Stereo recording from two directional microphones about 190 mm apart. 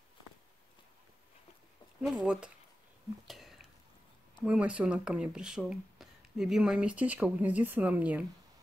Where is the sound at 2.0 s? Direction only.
5° right (ahead or behind).